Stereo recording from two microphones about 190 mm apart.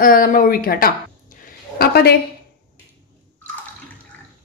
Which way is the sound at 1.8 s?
55° left (ahead or behind).